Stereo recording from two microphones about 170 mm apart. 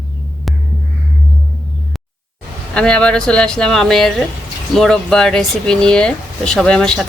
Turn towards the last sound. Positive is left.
turn(degrees=5)  # may be behind; listen again after turning